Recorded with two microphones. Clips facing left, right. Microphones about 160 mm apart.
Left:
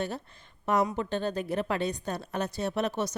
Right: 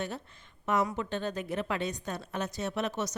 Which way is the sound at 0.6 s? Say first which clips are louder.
Left 3 dB; 35° left (ahead or behind).